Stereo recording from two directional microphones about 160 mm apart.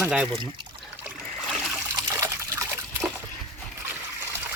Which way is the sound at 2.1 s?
15° right (ahead or behind).